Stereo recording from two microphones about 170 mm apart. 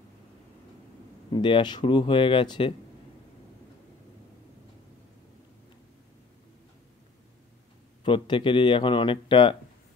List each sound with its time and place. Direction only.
1.3 s speech: 25° left (ahead or behind)
8.0 s speech: 30° left (ahead or behind)